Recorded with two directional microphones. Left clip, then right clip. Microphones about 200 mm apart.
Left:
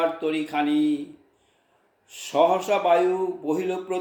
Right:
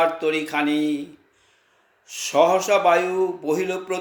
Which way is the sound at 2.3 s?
25° right (ahead or behind).